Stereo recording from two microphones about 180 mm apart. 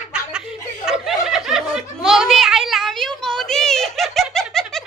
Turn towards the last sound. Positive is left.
turn(degrees=0)  # may be behind; listen again after turning